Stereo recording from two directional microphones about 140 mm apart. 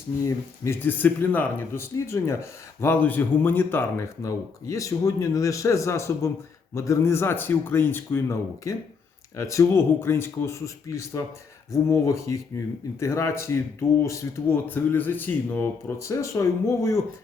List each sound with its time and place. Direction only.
0.2 s a man's voice: 20° left (ahead or behind)